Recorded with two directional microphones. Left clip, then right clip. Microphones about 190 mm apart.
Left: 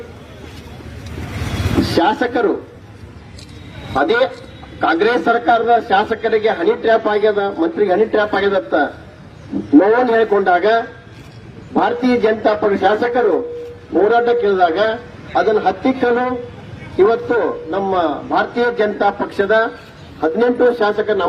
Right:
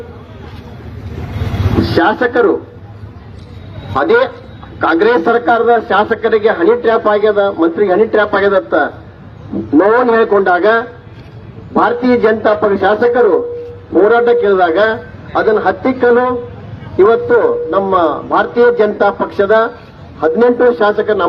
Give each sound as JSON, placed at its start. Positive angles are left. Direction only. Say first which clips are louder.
{"t": 2.0, "sound": "a man's voice", "louder": "right 5 dB", "side_deg": 50}
{"t": 3.9, "sound": "a man's voice", "louder": "right 4 dB", "side_deg": 50}